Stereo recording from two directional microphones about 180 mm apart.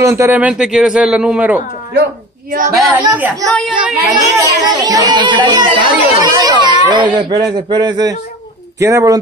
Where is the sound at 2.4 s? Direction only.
45° right (ahead or behind).